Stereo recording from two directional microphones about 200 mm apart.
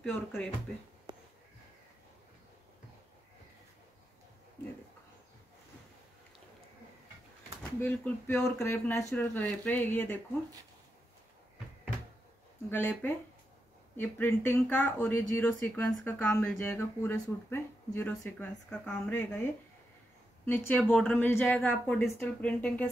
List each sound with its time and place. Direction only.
0.3 s speech: 5° left (ahead or behind)
1.1 s a sound: 20° right (ahead or behind)
7.8 s speech: 10° left (ahead or behind)
12.6 s speech: 10° left (ahead or behind)